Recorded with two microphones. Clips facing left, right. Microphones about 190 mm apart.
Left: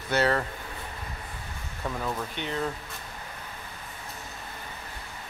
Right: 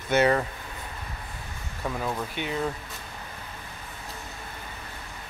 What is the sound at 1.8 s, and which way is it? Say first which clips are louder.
Speech: right 2 dB; 10° right (ahead or behind).